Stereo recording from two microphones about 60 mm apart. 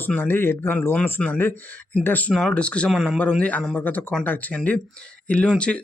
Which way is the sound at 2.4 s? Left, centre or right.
Centre.